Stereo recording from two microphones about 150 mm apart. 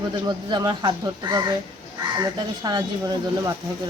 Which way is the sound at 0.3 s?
30° right (ahead or behind).